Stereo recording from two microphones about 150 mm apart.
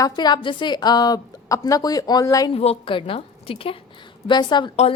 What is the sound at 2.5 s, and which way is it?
A woman's voice, 40° left (ahead or behind).